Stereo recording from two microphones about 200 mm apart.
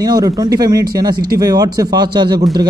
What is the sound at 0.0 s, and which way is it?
Speech, 20° right (ahead or behind).